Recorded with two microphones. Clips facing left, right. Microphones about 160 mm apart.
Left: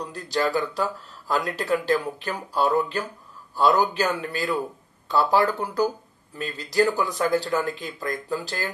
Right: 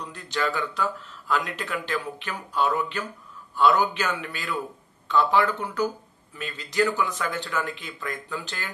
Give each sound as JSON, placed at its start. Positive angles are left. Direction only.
{"t": 0.0, "sound": "speech", "side_deg": 40}